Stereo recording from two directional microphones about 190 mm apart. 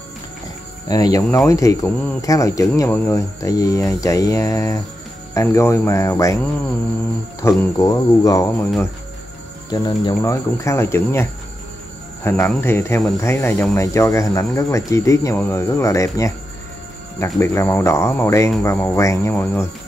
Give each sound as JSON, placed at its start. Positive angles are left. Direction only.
{"t": 0.8, "sound": "speech", "side_deg": 20}
{"t": 9.7, "sound": "speech", "side_deg": 20}